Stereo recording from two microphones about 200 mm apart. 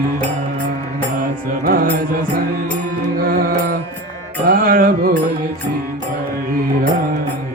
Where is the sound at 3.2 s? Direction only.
45° right (ahead or behind).